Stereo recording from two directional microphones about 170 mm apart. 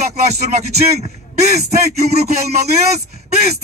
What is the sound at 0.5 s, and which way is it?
Speech, 40° right (ahead or behind).